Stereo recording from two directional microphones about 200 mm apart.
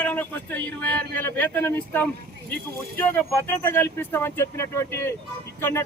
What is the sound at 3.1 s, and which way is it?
Speech, 10° left (ahead or behind).